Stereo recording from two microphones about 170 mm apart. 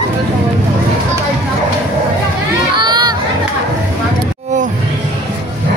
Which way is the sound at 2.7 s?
25° right (ahead or behind).